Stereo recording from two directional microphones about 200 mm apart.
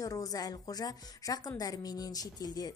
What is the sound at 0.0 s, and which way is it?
A woman's voice, 15° left (ahead or behind).